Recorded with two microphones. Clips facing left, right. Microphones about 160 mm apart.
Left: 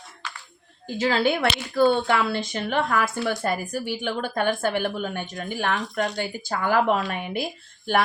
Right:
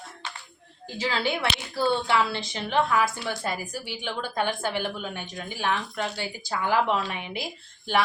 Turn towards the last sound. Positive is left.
turn(degrees=50)  # may be behind; listen again after turning